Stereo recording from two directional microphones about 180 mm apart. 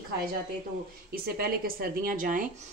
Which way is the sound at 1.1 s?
55° right (ahead or behind).